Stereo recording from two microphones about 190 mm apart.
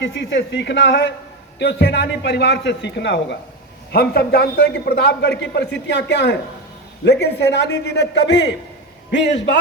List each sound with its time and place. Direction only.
0.0 s a man's voice: 70° left (ahead or behind)